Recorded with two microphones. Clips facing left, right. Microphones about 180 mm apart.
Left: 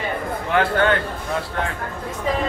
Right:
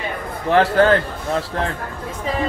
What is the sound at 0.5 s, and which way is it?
Speech, 35° right (ahead or behind).